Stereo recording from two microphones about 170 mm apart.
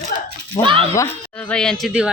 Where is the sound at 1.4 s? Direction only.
5° left (ahead or behind).